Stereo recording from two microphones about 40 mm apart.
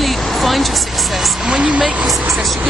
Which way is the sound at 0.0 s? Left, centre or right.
Centre.